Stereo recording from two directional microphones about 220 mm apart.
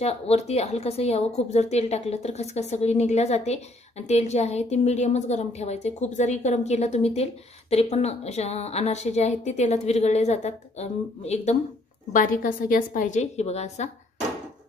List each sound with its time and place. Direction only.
0.0 s a woman's voice: 30° left (ahead or behind)